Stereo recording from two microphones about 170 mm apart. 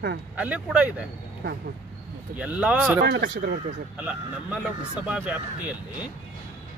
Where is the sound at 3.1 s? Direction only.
75° right (ahead or behind).